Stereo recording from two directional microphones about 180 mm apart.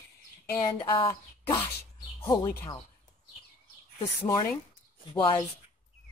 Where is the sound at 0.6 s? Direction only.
25° left (ahead or behind).